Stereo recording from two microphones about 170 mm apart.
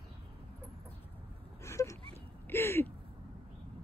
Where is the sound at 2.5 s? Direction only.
15° left (ahead or behind).